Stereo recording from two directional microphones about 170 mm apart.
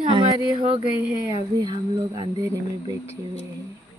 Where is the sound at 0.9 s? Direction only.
10° right (ahead or behind).